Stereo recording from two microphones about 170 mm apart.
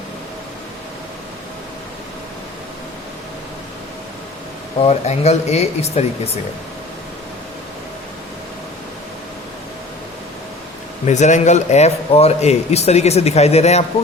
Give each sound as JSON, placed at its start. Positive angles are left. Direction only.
{"t": 4.9, "sound": "speech", "side_deg": 40}
{"t": 11.0, "sound": "speech", "side_deg": 45}